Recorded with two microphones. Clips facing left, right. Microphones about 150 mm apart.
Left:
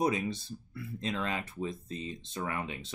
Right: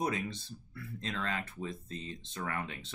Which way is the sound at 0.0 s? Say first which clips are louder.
Left 4 dB; 15° left (ahead or behind).